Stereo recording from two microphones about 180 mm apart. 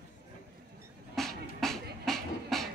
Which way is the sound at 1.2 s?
Centre (ahead or behind).